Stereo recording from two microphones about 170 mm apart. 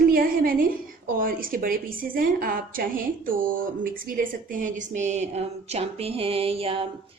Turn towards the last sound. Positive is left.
turn(degrees=-35)  # may be behind; listen again after turning